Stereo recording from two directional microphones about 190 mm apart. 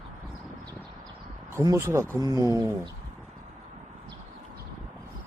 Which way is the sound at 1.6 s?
15° right (ahead or behind).